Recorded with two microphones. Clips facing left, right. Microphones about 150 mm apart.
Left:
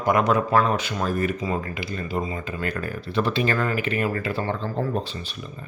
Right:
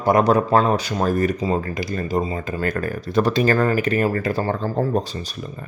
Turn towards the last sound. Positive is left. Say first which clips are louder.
# right 5 dB
turn(degrees=-40)  # may be behind; listen again after turning